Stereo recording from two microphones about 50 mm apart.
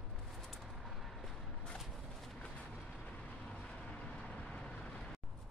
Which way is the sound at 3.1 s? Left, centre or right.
Left.